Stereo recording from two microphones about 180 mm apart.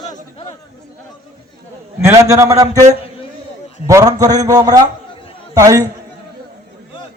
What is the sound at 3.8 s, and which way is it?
A man's voice, 20° right (ahead or behind).